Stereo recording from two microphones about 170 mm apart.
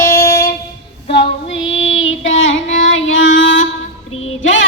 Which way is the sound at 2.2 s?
90° left.